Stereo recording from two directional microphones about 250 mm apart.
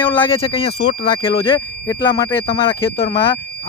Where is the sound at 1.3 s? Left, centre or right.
Centre.